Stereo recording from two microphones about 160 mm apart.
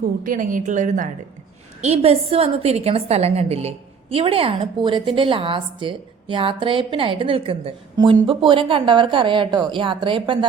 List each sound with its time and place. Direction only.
0.3 s a woman's voice: 55° right (ahead or behind)
1.8 s a woman's voice: 40° right (ahead or behind)